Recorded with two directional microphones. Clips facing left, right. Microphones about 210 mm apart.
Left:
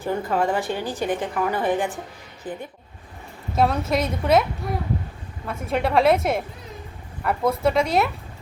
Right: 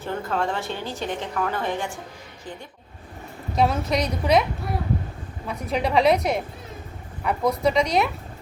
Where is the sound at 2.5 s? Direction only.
55° left (ahead or behind).